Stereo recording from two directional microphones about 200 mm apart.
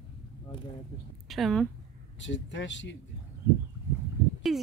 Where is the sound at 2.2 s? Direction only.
65° left (ahead or behind).